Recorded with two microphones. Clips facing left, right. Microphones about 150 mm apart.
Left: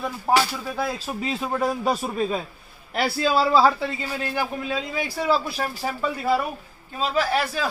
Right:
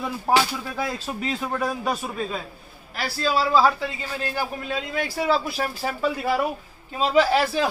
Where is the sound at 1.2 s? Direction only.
15° left (ahead or behind).